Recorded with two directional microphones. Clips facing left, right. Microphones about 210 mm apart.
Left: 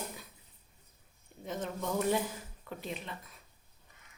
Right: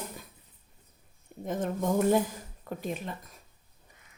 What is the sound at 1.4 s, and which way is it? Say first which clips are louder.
A woman's voice: right 6 dB; 50° right (ahead or behind).